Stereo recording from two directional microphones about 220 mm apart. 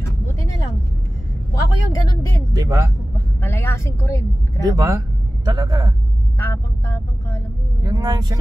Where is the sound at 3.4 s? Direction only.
10° left (ahead or behind).